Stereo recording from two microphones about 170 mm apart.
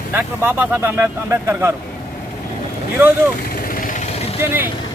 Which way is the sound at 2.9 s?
10° right (ahead or behind).